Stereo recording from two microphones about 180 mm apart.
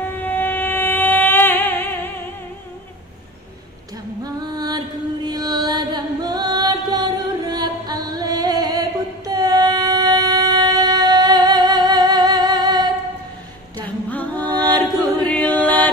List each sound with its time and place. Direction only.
0.0 s music: 10° left (ahead or behind)
4.2 s female singing: 20° right (ahead or behind)
5.3 s music: 20° right (ahead or behind)
14.1 s music: 10° left (ahead or behind)
15.3 s chant: 10° left (ahead or behind)